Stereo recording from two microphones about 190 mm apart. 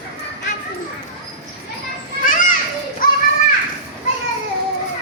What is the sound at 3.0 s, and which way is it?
Children playing, 45° left (ahead or behind).